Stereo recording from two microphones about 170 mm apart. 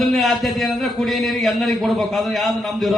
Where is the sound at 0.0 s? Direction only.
Centre (ahead or behind).